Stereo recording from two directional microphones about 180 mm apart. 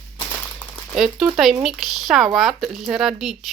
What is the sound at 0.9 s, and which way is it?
Speech, centre (ahead or behind).